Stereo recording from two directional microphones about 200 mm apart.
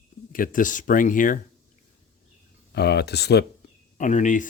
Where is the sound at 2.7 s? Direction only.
55° left (ahead or behind).